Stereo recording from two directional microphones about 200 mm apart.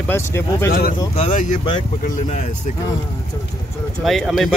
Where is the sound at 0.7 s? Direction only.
45° left (ahead or behind).